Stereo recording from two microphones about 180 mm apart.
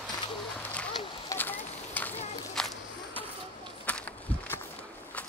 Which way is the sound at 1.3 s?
10° left (ahead or behind).